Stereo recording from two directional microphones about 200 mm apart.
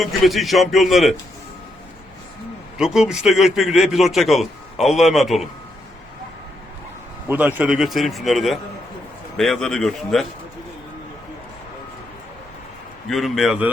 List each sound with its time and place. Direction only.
0.0 s a man's voice: centre (ahead or behind)
2.7 s a man's voice: centre (ahead or behind)
7.3 s a man's voice: 10° right (ahead or behind)
13.1 s a man's voice: centre (ahead or behind)